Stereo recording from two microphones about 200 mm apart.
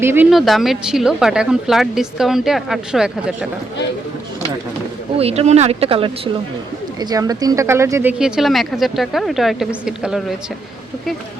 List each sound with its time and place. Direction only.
0.0 s a woman's voice: 10° right (ahead or behind)
5.1 s speech: 30° right (ahead or behind); by 8.1 s 15° right (ahead or behind)
8.2 s a woman's voice: centre (ahead or behind)